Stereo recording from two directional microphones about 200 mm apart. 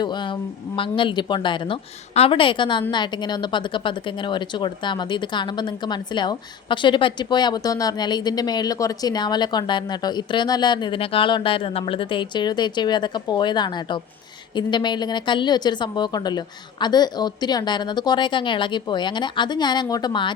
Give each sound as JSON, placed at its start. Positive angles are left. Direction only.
{"t": 0.0, "sound": "a woman's voice", "side_deg": 20}